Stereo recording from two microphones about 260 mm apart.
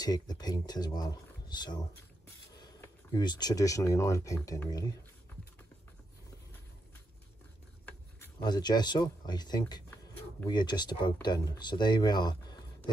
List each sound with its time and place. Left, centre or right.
0.0 s speech: centre
7.8 s speech: centre